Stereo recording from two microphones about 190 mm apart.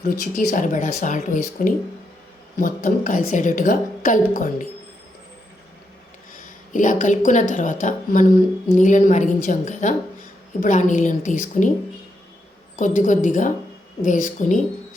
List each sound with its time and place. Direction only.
0.0 s a woman's voice: 50° left (ahead or behind)
6.3 s a woman's voice: 45° left (ahead or behind)
12.7 s a woman's voice: 45° left (ahead or behind)